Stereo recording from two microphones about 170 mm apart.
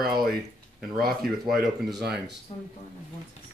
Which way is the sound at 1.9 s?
80° right.